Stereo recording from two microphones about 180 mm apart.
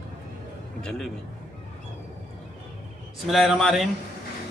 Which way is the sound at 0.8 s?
Centre (ahead or behind).